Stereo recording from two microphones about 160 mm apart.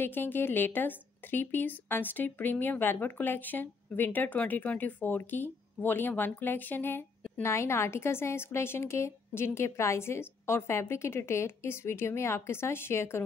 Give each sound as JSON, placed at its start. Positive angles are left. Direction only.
{"t": 0.0, "sound": "a woman's voice", "side_deg": 15}